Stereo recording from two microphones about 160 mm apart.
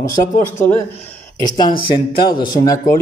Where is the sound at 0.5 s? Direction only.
15° left (ahead or behind).